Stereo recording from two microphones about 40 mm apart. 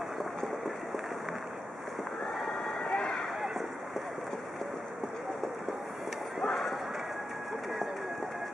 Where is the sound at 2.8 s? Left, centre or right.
Centre.